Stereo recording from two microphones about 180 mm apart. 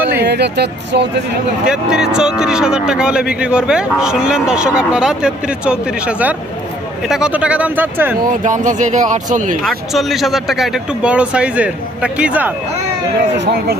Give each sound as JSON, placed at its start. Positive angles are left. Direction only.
{"t": 0.2, "sound": "speech", "side_deg": -70}
{"t": 1.6, "sound": "speech", "side_deg": -5}
{"t": 8.4, "sound": "speech", "side_deg": -45}
{"t": 9.6, "sound": "speech", "side_deg": 0}
{"t": 13.3, "sound": "speech", "side_deg": -70}